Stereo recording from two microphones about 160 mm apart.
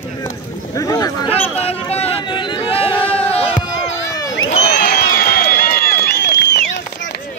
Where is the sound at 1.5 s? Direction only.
40° left (ahead or behind).